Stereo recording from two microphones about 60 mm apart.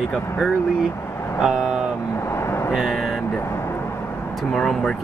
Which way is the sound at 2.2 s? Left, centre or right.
Left.